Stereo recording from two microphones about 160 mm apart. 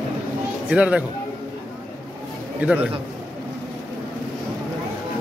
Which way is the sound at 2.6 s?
10° right (ahead or behind).